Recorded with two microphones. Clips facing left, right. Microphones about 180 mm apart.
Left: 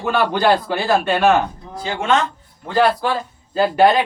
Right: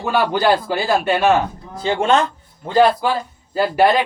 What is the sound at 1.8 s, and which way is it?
Speech, 30° right (ahead or behind).